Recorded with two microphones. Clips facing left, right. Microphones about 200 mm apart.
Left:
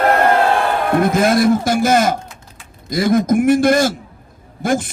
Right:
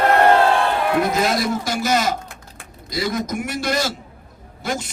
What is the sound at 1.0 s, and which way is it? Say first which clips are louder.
A man's voice: left 9 dB; 50° left (ahead or behind).